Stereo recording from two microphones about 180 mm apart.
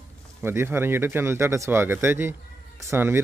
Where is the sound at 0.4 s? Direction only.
15° right (ahead or behind).